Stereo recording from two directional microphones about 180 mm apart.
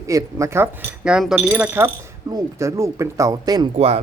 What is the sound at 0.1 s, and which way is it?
Speech, 15° right (ahead or behind).